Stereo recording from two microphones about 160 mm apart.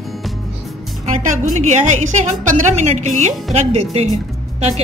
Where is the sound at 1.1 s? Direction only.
50° right (ahead or behind).